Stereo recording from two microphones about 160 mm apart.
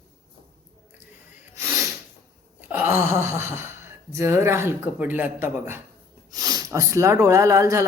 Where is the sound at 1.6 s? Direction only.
15° right (ahead or behind).